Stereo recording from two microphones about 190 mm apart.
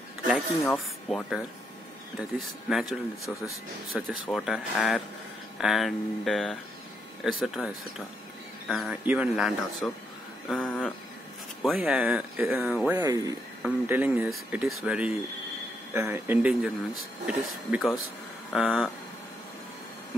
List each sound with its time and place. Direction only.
0.3 s speech: centre (ahead or behind)
13.0 s speech: 20° right (ahead or behind)
13.6 s speech: 5° right (ahead or behind)